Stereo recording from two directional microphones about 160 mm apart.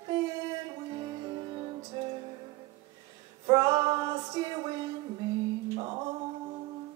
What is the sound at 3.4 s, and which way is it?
Female singing, 25° right (ahead or behind).